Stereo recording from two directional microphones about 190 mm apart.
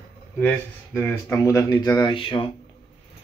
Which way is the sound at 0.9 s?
10° left (ahead or behind).